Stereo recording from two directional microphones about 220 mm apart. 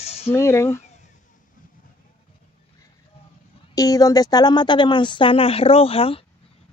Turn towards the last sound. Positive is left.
turn(degrees=25)  # may be behind; listen again after turning